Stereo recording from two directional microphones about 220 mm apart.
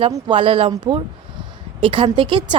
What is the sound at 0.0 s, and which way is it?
A woman's voice, 25° right (ahead or behind).